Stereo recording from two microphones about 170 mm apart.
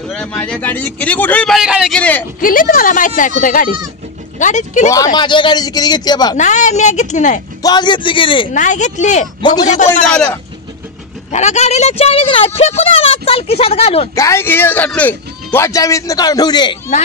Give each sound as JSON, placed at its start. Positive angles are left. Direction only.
{"t": 0.1, "sound": "a man's voice", "side_deg": 10}
{"t": 2.0, "sound": "a man's voice", "side_deg": 10}
{"t": 2.4, "sound": "a woman's voice", "side_deg": 55}
{"t": 4.9, "sound": "a man's voice", "side_deg": 25}
{"t": 6.3, "sound": "a woman's voice", "side_deg": 45}
{"t": 7.6, "sound": "a man's voice", "side_deg": 25}
{"t": 8.5, "sound": "a woman's voice", "side_deg": 45}
{"t": 9.4, "sound": "a man's voice", "side_deg": 25}
{"t": 10.1, "sound": "a man's voice", "side_deg": 5}
{"t": 11.3, "sound": "speech", "side_deg": 40}
{"t": 14.1, "sound": "a man's voice", "side_deg": 15}